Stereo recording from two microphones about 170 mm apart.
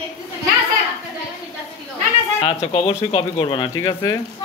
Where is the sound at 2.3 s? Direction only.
35° left (ahead or behind).